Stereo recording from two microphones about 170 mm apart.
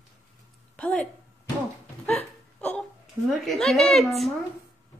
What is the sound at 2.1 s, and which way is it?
Hiccup, 5° left (ahead or behind).